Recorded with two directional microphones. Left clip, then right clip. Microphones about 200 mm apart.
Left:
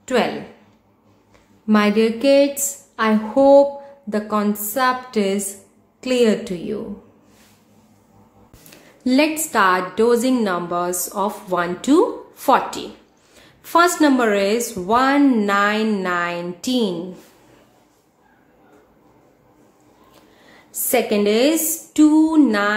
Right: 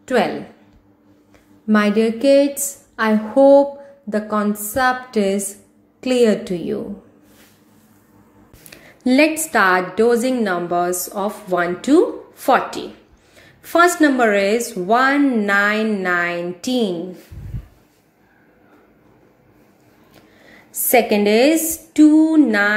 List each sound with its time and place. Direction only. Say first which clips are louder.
0.0 s a woman's voice: right 2 dB; 10° right (ahead or behind)
1.7 s a woman's voice: even; 5° right (ahead or behind)
8.6 s a sound: right 3 dB; 15° right (ahead or behind)
9.4 s a woman's voice: right 1 dB; 10° right (ahead or behind)
20.8 s a woman's voice: right 3 dB; 15° right (ahead or behind)